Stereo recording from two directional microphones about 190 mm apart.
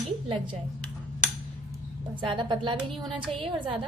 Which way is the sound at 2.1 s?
25° right (ahead or behind).